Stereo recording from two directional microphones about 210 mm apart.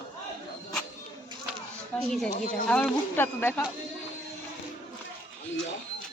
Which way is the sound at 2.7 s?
5° left (ahead or behind).